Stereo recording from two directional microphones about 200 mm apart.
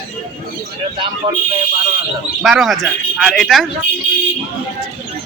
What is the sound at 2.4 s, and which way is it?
A man's voice, centre (ahead or behind).